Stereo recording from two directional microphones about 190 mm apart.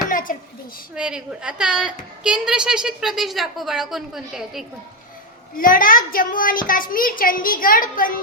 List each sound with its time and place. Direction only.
0.1 s a sound: 45° left (ahead or behind)
0.9 s a woman's voice: 5° right (ahead or behind)
5.5 s a child's voice: 45° left (ahead or behind)